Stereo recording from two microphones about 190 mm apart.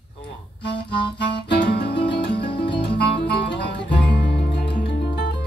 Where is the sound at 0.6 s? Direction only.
60° left (ahead or behind).